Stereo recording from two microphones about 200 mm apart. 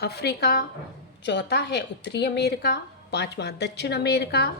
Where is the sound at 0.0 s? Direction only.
55° left (ahead or behind).